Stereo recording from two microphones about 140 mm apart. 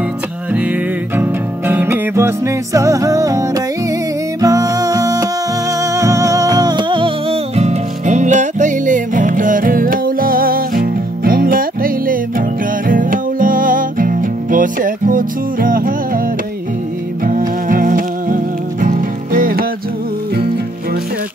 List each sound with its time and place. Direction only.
0.5 s music: 10° right (ahead or behind); by 15.9 s 85° right
17.2 s music: 75° right (ahead or behind)